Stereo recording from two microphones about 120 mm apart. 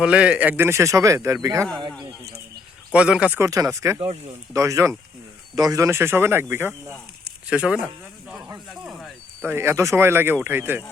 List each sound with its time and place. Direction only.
0.0 s speech: 10° right (ahead or behind); by 1.6 s 25° right (ahead or behind)
2.9 s speech: 10° right (ahead or behind)
3.4 s speech: 30° right (ahead or behind)
3.9 s speech: 50° right (ahead or behind)
4.5 s speech: 25° right (ahead or behind); by 7.8 s 10° right (ahead or behind)
9.4 s speech: 20° right (ahead or behind)